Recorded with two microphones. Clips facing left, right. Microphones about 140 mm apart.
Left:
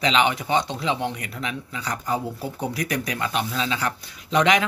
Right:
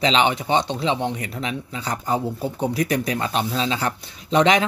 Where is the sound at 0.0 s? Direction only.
25° right (ahead or behind).